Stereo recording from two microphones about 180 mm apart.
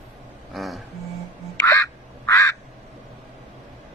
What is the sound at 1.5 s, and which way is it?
Quack, 15° left (ahead or behind).